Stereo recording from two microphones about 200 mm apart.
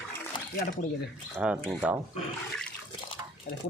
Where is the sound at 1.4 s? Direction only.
Centre (ahead or behind).